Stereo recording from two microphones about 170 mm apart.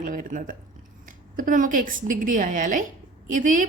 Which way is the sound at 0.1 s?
55° right (ahead or behind).